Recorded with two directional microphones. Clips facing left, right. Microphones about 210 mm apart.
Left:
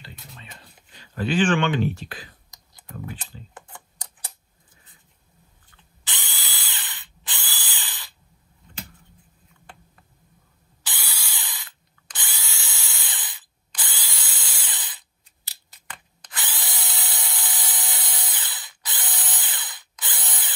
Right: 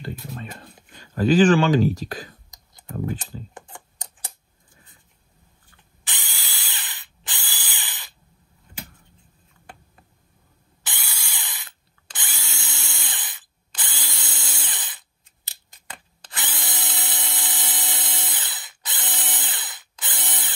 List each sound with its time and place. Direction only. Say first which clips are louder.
0.3 s speech: right 11 dB; 55° right (ahead or behind)
3.5 s computer keyboard: right 2 dB; 20° right (ahead or behind)
6.3 s spray: even; 20° right (ahead or behind)
10.8 s a sound: even; 20° right (ahead or behind)
11.6 s drill: right 1 dB; 20° right (ahead or behind)
15.4 s tools: right 1 dB; 25° right (ahead or behind)